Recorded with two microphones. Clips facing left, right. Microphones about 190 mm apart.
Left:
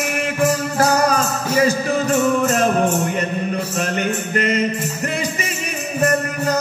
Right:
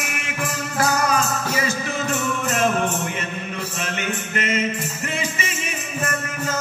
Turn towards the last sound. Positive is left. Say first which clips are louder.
# left 7 dB
turn(degrees=40)  # may be behind; listen again after turning